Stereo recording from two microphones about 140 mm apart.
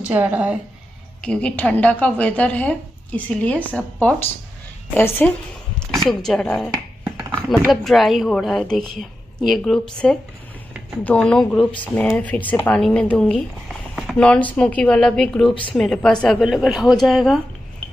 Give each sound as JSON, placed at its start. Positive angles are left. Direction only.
{"t": 0.1, "sound": "a woman's voice", "side_deg": -10}
{"t": 1.2, "sound": "a woman's voice", "side_deg": 10}
{"t": 6.0, "sound": "a woman's voice", "side_deg": 5}